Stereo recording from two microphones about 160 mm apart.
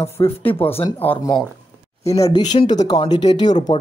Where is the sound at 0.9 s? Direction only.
10° left (ahead or behind).